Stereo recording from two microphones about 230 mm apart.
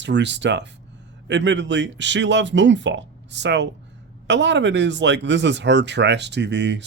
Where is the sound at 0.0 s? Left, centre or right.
Right.